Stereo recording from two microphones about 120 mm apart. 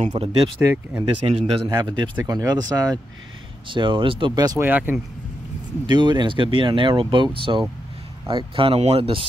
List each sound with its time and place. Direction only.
0.2 s speech: 50° right (ahead or behind)
0.6 s speech: 15° right (ahead or behind)
1.2 s a man's voice: 60° right (ahead or behind)
1.7 s speech: 35° right (ahead or behind)
3.6 s speech: 40° right (ahead or behind)
4.6 s speech: 15° right (ahead or behind)
5.9 s speech: 40° right (ahead or behind)